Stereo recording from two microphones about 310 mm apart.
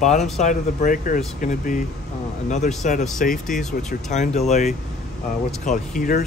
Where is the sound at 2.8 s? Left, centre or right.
Left.